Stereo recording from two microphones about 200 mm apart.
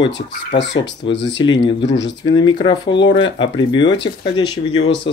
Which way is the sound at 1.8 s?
60° left (ahead or behind).